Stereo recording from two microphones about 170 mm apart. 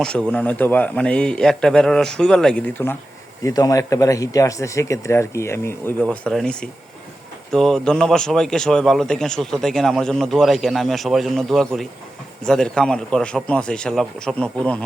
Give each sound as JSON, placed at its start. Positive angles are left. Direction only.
{"t": 0.0, "sound": "a man's voice", "side_deg": 5}
{"t": 3.4, "sound": "a man's voice", "side_deg": 20}